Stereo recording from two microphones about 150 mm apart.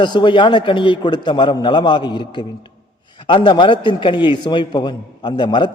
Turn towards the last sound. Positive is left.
turn(degrees=30)  # may be behind; listen again after turning